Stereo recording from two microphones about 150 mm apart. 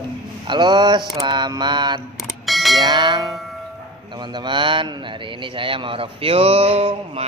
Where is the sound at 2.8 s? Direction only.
30° right (ahead or behind).